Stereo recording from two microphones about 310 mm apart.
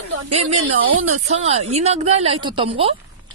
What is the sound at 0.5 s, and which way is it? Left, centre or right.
Speech, right.